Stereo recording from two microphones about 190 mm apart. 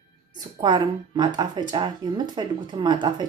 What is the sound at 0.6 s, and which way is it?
Speech, 25° right (ahead or behind).